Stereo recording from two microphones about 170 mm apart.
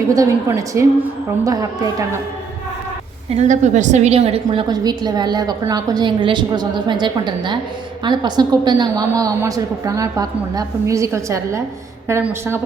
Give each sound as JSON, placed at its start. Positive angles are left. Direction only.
{"t": 0.1, "sound": "a woman's voice", "side_deg": -20}
{"t": 3.2, "sound": "a woman's voice", "side_deg": -40}
{"t": 4.7, "sound": "a woman's voice", "side_deg": -25}